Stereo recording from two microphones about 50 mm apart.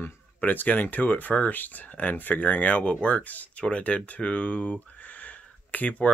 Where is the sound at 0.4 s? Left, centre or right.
Left.